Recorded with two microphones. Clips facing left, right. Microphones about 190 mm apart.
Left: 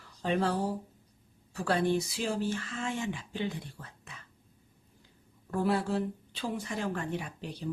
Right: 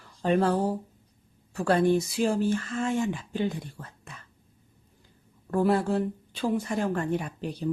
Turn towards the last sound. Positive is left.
turn(degrees=-50)  # may be behind; listen again after turning